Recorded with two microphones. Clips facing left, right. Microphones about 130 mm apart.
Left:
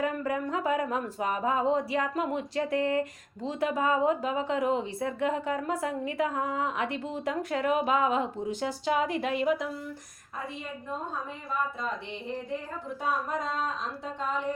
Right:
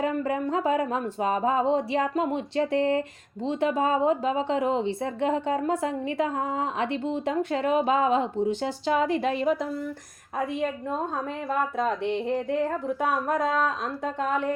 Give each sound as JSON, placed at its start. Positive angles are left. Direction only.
{"t": 0.0, "sound": "speech", "side_deg": -25}
{"t": 11.4, "sound": "speech", "side_deg": -70}